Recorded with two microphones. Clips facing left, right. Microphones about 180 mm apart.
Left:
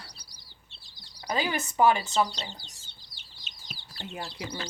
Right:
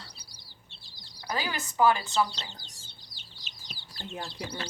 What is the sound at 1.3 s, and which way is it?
Speech, 20° left (ahead or behind).